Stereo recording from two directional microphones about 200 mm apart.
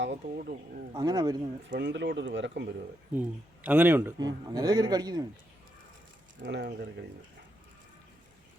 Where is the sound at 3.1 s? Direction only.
10° right (ahead or behind).